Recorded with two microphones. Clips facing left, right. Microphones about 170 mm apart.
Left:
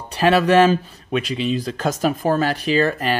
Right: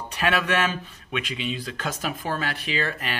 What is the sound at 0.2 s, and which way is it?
Speech, 35° left (ahead or behind).